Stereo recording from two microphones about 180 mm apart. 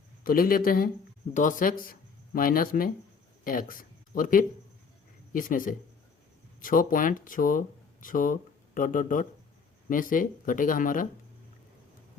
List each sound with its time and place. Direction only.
0.3 s speech: 55° left (ahead or behind)